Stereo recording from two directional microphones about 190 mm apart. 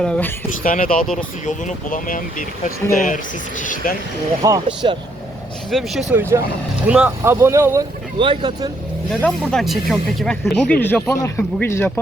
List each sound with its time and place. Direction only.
0.0 s speech: 5° left (ahead or behind)
0.6 s speech: 45° left (ahead or behind)
4.4 s speech: 20° right (ahead or behind)
5.7 s speech: centre (ahead or behind)
6.1 s speech: 15° right (ahead or behind)
9.2 s speech: 5° left (ahead or behind)